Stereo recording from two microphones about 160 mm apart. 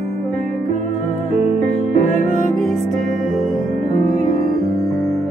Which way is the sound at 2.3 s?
60° left (ahead or behind).